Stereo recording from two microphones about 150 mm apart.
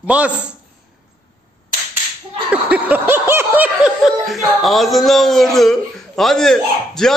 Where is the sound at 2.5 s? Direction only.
10° right (ahead or behind).